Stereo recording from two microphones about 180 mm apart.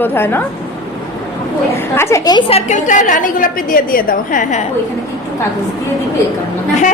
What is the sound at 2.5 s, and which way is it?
A woman's voice, 35° left (ahead or behind).